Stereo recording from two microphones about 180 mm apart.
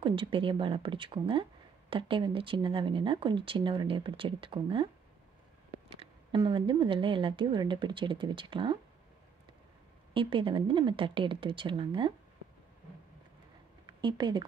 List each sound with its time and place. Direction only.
0.0 s speech: 30° right (ahead or behind)
5.9 s speech: 30° right (ahead or behind)
10.1 s speech: 30° right (ahead or behind)
13.8 s speech: 25° right (ahead or behind)